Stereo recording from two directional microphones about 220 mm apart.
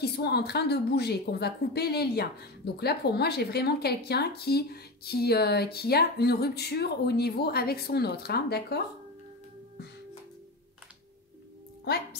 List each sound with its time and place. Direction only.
0.0 s a woman's voice: 45° left (ahead or behind)
11.8 s a woman's voice: 45° left (ahead or behind)